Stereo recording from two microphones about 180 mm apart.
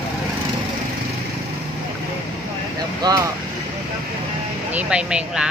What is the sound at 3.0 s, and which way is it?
Speech, 20° right (ahead or behind).